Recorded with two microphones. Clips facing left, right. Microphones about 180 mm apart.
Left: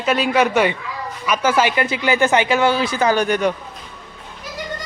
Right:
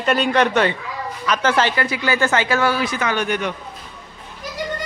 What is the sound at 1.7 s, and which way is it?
Speech, 20° left (ahead or behind).